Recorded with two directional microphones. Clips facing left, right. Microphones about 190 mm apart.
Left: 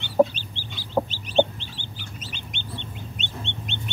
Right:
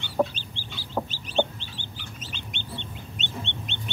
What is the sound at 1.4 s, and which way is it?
Chicken, 20° left (ahead or behind).